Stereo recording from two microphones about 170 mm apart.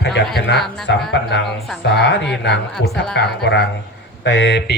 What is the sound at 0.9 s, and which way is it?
Speech, 90° left.